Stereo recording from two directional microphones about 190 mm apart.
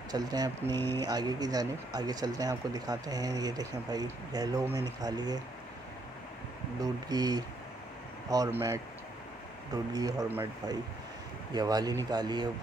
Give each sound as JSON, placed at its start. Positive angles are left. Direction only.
{"t": 0.1, "sound": "speech", "side_deg": -20}
{"t": 6.8, "sound": "speech", "side_deg": -20}
{"t": 9.9, "sound": "speech", "side_deg": -20}